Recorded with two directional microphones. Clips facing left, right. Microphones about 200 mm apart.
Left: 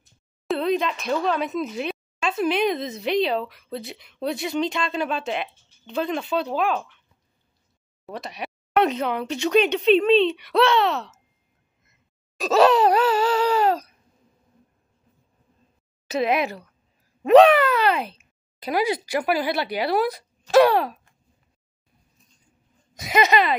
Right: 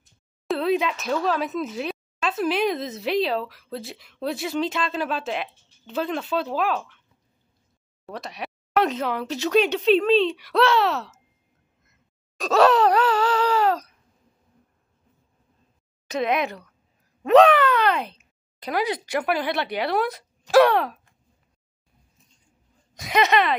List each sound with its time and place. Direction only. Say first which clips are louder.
0.5 s speech: even; 5° right (ahead or behind)
8.1 s speech: left 1 dB; centre (ahead or behind)
12.4 s a sound: left 1 dB; 5° left (ahead or behind)
16.1 s speech: left 1 dB; 5° left (ahead or behind)
22.9 s speech: left 1 dB; 5° left (ahead or behind)